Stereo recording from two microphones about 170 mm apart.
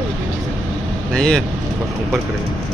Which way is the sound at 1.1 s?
5° left (ahead or behind).